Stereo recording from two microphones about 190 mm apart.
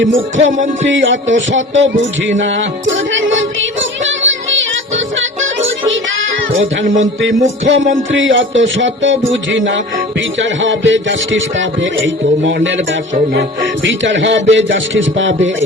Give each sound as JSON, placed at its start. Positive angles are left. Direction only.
{"t": 0.0, "sound": "music", "side_deg": -80}
{"t": 6.9, "sound": "music", "side_deg": -80}
{"t": 8.1, "sound": "music", "side_deg": -80}